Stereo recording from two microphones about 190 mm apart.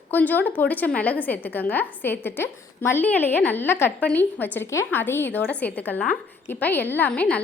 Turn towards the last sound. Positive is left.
turn(degrees=5)  # may be behind; listen again after turning